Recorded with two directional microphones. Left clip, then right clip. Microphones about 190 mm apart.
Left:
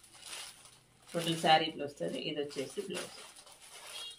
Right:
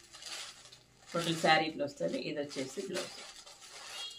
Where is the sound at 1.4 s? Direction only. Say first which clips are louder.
Left 1 dB; 15° right (ahead or behind).